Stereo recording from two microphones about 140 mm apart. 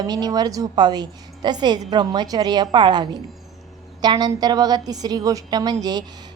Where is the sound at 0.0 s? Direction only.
30° right (ahead or behind).